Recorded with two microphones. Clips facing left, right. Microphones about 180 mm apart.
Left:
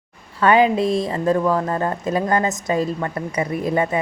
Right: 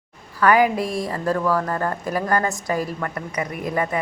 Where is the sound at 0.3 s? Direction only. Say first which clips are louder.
Left 2 dB; 25° left (ahead or behind).